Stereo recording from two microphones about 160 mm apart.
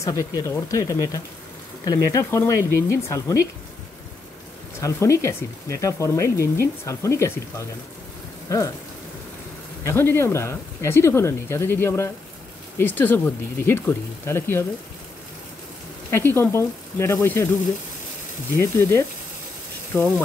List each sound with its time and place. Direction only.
0.0 s speech: 20° left (ahead or behind)
4.7 s speech: 20° left (ahead or behind)
9.8 s speech: 15° left (ahead or behind)
16.1 s speech: 15° left (ahead or behind)
18.6 s speech: 15° left (ahead or behind)